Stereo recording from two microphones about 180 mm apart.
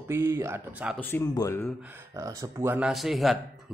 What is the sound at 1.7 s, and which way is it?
A man's voice, 10° right (ahead or behind).